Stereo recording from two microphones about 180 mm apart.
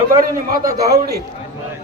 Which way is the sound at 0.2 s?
50° right (ahead or behind).